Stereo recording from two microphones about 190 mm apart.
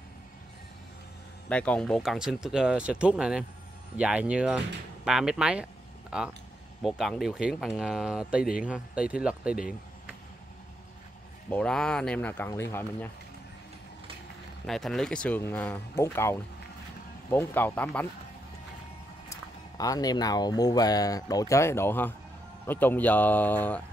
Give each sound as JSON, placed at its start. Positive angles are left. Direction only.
{"t": 1.5, "sound": "speech", "side_deg": 5}
{"t": 11.5, "sound": "speech", "side_deg": 5}
{"t": 14.7, "sound": "speech", "side_deg": 0}
{"t": 19.8, "sound": "speech", "side_deg": 20}